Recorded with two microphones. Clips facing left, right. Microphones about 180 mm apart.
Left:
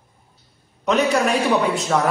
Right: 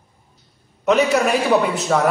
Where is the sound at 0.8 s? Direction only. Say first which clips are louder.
Right 2 dB; centre (ahead or behind).